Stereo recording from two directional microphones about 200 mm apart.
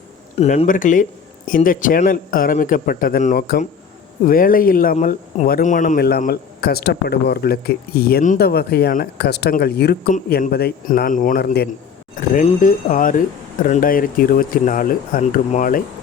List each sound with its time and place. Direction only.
0.3 s speech: 30° left (ahead or behind); by 11.7 s 50° left (ahead or behind)
12.1 s speech: 40° left (ahead or behind)